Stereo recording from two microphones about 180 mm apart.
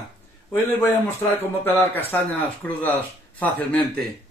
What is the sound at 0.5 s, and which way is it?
A man's voice, 10° left (ahead or behind).